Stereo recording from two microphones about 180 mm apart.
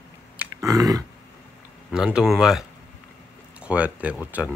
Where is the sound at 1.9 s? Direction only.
5° right (ahead or behind).